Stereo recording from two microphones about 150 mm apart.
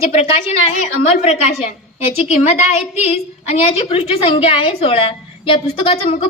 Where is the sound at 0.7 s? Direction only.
55° left (ahead or behind).